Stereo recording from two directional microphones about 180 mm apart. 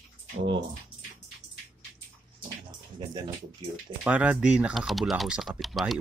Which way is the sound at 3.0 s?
25° right (ahead or behind).